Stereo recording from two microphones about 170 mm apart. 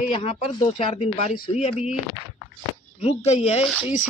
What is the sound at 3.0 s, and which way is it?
Speech, 40° left (ahead or behind).